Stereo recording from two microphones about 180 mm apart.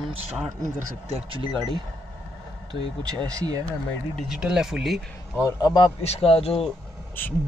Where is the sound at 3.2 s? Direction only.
20° right (ahead or behind).